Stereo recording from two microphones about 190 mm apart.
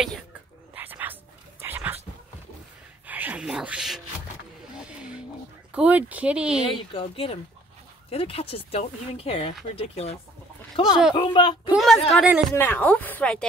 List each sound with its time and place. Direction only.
0.7 s bow-wow: 10° right (ahead or behind)
1.6 s a sound: 10° right (ahead or behind)
3.1 s a sound: 10° right (ahead or behind)
4.7 s vehicle: 5° right (ahead or behind)
5.7 s speech: 5° right (ahead or behind)
6.7 s speech: 30° left (ahead or behind)
11.7 s a woman's voice: centre (ahead or behind)